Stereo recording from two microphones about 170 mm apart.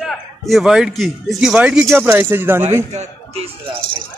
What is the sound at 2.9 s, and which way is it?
Speech, 40° right (ahead or behind).